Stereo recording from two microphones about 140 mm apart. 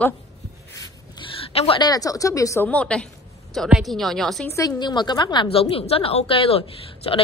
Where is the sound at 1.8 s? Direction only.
25° left (ahead or behind).